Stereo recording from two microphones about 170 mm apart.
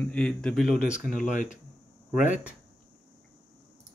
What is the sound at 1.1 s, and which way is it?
Speech, 45° left (ahead or behind).